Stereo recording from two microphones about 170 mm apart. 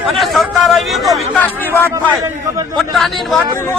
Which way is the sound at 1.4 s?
10° left (ahead or behind).